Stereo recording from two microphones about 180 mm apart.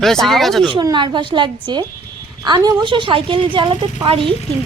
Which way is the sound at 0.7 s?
25° right (ahead or behind).